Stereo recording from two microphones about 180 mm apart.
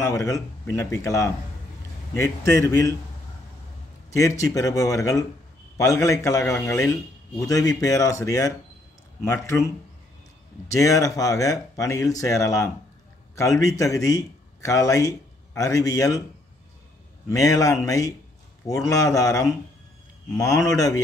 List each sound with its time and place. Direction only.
0.0 s a man's voice: 15° left (ahead or behind)
4.1 s a man's voice: 20° left (ahead or behind)
10.7 s a man's voice: 20° left (ahead or behind)
17.3 s speech: 20° left (ahead or behind)